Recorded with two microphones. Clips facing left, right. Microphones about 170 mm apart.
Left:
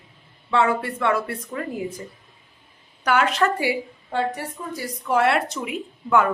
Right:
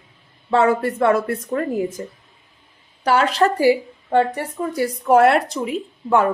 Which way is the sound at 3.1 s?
30° right (ahead or behind).